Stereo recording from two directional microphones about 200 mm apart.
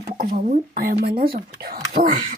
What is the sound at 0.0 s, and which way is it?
Speech, 40° right (ahead or behind).